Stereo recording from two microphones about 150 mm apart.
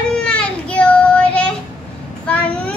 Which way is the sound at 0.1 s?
5° left (ahead or behind).